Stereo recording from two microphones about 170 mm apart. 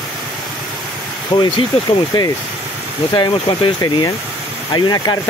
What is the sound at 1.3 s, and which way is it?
Speech, 25° left (ahead or behind).